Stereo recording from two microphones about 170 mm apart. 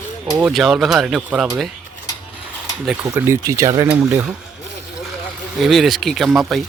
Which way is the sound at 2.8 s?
10° right (ahead or behind).